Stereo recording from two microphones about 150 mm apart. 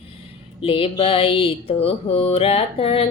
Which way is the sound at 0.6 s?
40° left (ahead or behind).